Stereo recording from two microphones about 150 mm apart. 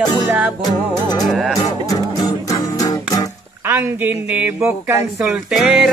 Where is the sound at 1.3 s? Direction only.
Centre (ahead or behind).